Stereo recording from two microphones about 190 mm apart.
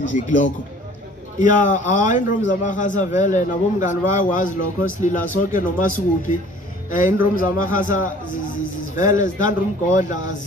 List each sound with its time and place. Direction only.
0.0 s a man's voice: 40° left (ahead or behind)
7.0 s speech: 15° right (ahead or behind)
7.3 s a man's voice: 45° left (ahead or behind)